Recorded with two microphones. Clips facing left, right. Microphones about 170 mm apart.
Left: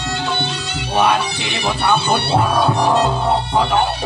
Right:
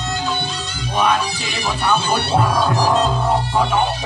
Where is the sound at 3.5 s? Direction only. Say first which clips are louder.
Left 2 dB; 65° left (ahead or behind).